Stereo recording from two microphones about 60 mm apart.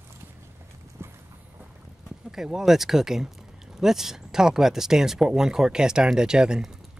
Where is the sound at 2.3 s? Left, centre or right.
Centre.